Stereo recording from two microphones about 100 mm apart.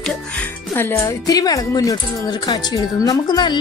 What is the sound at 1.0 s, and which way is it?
Speech, 40° left (ahead or behind).